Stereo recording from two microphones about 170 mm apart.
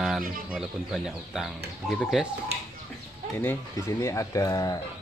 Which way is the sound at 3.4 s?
15° left (ahead or behind).